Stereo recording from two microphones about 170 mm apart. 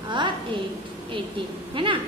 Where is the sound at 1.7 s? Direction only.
30° right (ahead or behind).